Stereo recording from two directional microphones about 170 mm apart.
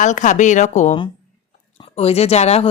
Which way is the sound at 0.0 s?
45° left (ahead or behind).